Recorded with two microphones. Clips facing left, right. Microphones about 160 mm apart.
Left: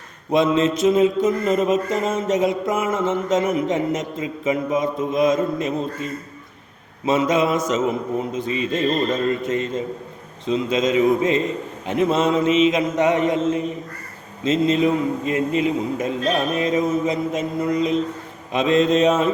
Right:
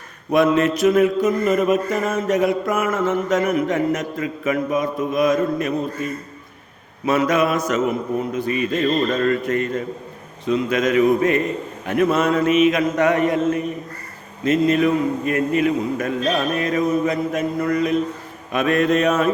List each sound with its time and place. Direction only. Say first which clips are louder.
0.3 s mantra: right 1 dB; 25° left (ahead or behind)